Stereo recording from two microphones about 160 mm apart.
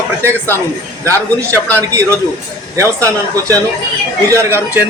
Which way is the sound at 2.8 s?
20° right (ahead or behind).